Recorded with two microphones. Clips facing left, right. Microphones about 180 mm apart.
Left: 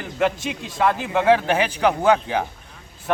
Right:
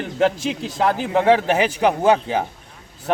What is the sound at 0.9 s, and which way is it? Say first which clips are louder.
Speech: right 2 dB; 35° right (ahead or behind).